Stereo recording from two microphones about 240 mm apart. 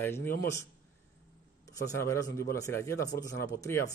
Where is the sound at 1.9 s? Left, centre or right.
Centre.